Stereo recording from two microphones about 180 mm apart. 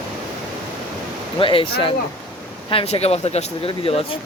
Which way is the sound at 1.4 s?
30° left (ahead or behind).